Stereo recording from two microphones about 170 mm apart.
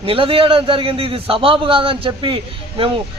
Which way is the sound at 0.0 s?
30° right (ahead or behind).